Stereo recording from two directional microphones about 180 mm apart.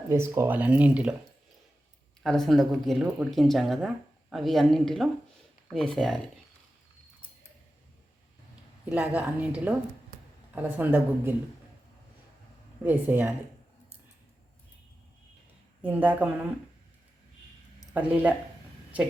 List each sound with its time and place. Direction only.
0.1 s speech: 15° right (ahead or behind)
2.2 s speech: centre (ahead or behind)
8.9 s speech: 5° right (ahead or behind)
12.8 s speech: 10° right (ahead or behind)
15.8 s speech: 10° right (ahead or behind)
17.9 s speech: 10° right (ahead or behind)